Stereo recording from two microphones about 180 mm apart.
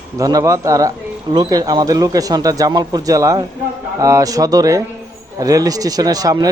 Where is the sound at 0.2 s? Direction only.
20° right (ahead or behind).